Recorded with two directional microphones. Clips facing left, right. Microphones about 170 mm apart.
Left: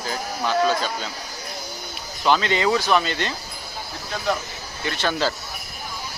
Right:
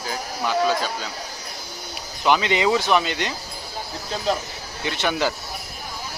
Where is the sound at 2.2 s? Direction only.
15° right (ahead or behind).